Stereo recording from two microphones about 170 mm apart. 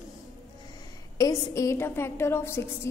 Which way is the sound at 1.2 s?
15° left (ahead or behind).